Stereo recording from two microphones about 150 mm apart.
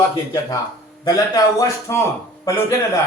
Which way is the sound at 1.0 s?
25° left (ahead or behind).